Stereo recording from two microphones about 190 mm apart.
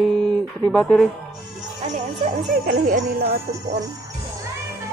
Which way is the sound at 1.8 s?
35° right (ahead or behind).